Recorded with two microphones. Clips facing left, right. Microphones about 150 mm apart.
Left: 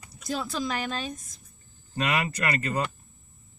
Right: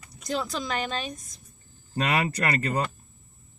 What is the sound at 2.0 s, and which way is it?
Speech, 40° right (ahead or behind).